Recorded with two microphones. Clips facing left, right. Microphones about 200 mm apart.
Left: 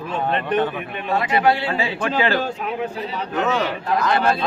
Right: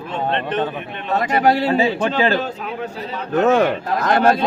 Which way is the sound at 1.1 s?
45° right (ahead or behind).